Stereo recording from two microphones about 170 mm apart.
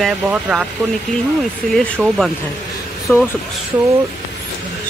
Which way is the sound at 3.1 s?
10° left (ahead or behind).